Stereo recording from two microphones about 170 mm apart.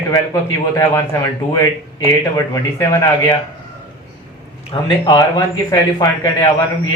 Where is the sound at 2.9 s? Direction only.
20° left (ahead or behind).